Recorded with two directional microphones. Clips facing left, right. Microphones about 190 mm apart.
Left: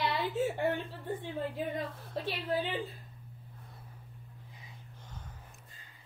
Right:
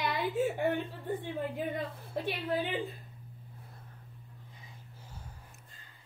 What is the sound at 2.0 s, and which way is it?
Speech, 10° right (ahead or behind).